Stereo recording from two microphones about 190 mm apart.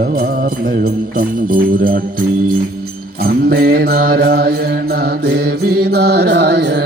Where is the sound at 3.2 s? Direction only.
55° right (ahead or behind).